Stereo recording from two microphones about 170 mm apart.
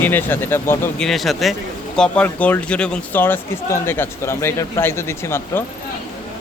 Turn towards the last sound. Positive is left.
turn(degrees=15)  # may be behind; listen again after turning